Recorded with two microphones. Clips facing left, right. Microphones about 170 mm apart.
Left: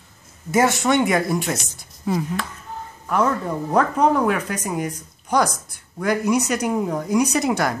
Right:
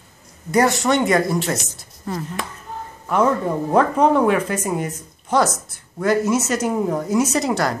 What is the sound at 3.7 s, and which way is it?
Speech, 5° right (ahead or behind).